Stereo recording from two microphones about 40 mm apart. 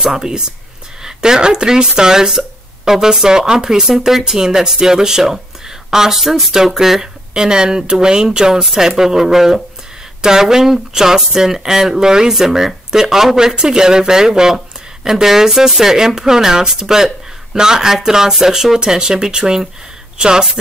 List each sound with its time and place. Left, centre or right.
0.1 s speech: centre
18.8 s speech: centre